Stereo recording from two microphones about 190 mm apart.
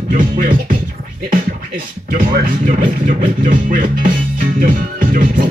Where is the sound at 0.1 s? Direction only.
45° right (ahead or behind).